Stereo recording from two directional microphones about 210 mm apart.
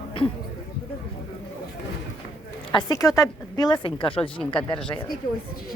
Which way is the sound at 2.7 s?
15° left (ahead or behind).